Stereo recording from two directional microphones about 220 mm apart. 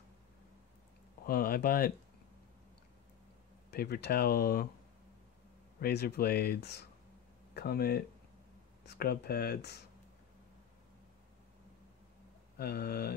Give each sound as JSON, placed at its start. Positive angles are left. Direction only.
{"t": 1.2, "sound": "speech", "side_deg": 40}
{"t": 3.7, "sound": "speech", "side_deg": 45}
{"t": 5.8, "sound": "speech", "side_deg": 45}
{"t": 12.5, "sound": "speech", "side_deg": 45}